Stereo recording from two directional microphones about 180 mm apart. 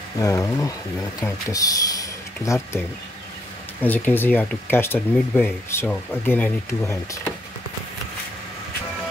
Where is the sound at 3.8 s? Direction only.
10° left (ahead or behind).